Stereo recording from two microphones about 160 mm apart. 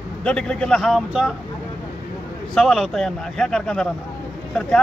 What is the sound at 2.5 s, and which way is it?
A man's voice, centre (ahead or behind).